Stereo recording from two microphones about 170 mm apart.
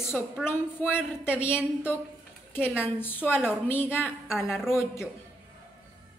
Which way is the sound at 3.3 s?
5° right (ahead or behind).